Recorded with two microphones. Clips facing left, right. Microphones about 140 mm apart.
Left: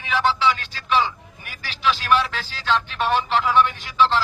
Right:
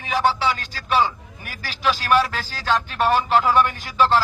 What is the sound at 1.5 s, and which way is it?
A man's voice, 45° right (ahead or behind).